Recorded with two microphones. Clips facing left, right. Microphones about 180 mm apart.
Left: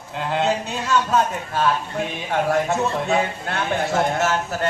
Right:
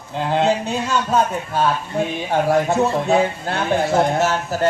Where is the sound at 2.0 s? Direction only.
35° right (ahead or behind).